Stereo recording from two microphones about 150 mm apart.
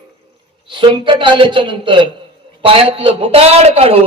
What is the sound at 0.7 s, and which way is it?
A man's voice, 35° right (ahead or behind).